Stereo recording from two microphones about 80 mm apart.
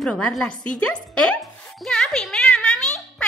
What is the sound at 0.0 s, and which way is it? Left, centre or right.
Speech, centre.